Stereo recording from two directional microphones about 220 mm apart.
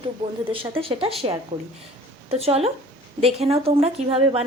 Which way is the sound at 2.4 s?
25° right (ahead or behind).